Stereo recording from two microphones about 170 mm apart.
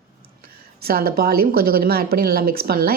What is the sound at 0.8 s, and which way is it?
A woman's voice, 65° right (ahead or behind).